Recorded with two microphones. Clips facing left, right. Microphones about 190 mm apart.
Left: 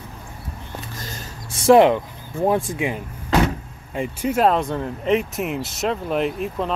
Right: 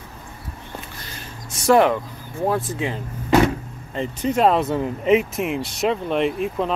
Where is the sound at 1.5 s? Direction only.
20° left (ahead or behind).